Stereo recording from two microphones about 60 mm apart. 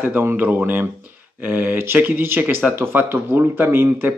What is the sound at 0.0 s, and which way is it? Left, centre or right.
Speech, right.